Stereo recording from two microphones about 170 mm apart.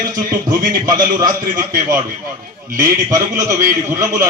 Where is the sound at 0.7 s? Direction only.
20° right (ahead or behind).